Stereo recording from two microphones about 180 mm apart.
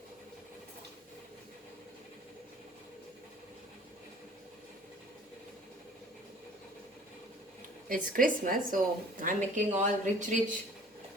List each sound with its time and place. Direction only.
7.9 s speech: 50° right (ahead or behind)